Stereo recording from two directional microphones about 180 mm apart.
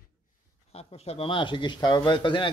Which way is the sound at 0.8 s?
35° left (ahead or behind).